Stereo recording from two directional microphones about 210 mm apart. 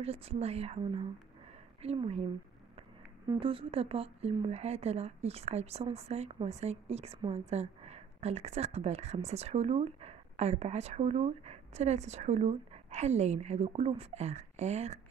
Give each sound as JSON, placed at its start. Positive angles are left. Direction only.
{"t": 0.0, "sound": "speech", "side_deg": -30}
{"t": 3.3, "sound": "speech", "side_deg": -25}